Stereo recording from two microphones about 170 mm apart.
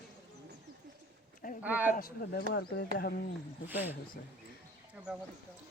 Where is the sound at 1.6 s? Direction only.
10° right (ahead or behind).